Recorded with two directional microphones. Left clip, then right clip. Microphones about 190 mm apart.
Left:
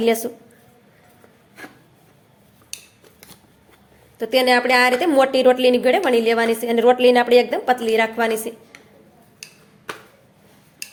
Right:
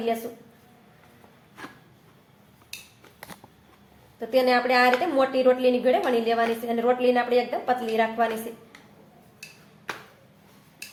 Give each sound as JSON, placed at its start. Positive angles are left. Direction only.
{"t": 4.2, "sound": "a woman's voice", "side_deg": 45}